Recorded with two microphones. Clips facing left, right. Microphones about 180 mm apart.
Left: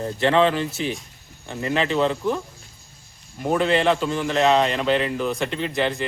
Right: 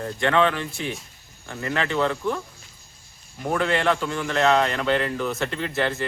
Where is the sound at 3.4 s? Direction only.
20° left (ahead or behind).